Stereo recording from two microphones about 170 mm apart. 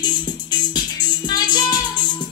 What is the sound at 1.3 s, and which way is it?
Music, 25° left (ahead or behind).